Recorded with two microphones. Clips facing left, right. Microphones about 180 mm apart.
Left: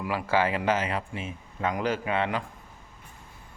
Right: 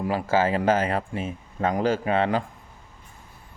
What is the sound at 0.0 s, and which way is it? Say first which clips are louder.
A man's voice: right 3 dB; 35° right (ahead or behind).